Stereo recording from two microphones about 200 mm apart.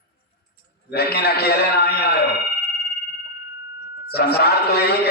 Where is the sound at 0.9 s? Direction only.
55° left (ahead or behind).